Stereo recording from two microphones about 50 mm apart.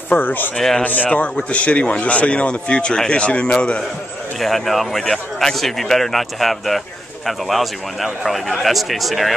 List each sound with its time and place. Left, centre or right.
0.1 s speech: left
0.6 s speech: centre
0.8 s a man's voice: left
4.4 s a man's voice: centre